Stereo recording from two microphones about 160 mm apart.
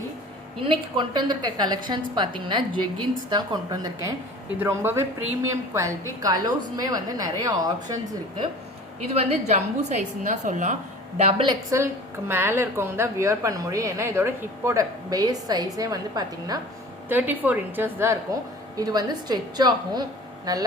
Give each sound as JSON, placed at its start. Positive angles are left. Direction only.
{"t": 0.6, "sound": "a woman's voice", "side_deg": -30}
{"t": 9.1, "sound": "a woman's voice", "side_deg": -40}
{"t": 11.2, "sound": "a woman's voice", "side_deg": -35}
{"t": 12.3, "sound": "a woman's voice", "side_deg": -15}
{"t": 17.1, "sound": "a woman's voice", "side_deg": -10}